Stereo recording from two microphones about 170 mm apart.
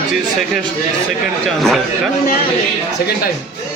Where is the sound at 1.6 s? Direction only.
Centre (ahead or behind).